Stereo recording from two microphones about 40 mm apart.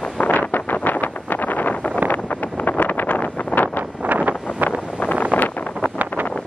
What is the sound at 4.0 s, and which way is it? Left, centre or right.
Wind, right.